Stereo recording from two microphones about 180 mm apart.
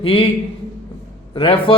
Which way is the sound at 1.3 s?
30° left (ahead or behind).